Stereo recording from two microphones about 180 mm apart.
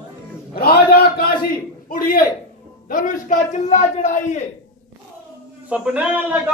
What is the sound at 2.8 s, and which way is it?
A man's voice, 50° left (ahead or behind).